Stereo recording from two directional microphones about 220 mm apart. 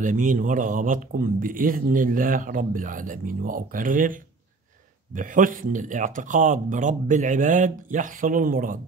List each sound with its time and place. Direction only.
0.0 s speech: 35° right (ahead or behind)